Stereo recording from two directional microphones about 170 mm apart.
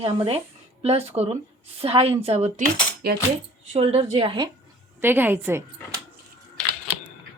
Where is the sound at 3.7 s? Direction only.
35° right (ahead or behind).